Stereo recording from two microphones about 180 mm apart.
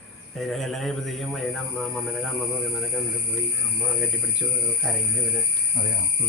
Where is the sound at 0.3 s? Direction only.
Centre (ahead or behind).